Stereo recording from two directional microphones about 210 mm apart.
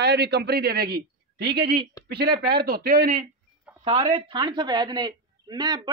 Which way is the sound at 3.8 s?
25° right (ahead or behind).